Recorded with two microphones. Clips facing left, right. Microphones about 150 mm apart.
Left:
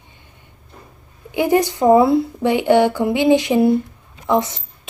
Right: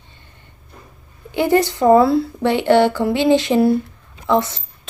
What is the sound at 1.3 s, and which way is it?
A woman's voice, 15° left (ahead or behind).